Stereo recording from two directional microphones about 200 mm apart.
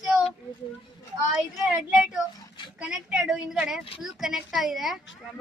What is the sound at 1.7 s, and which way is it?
Speech, 5° right (ahead or behind).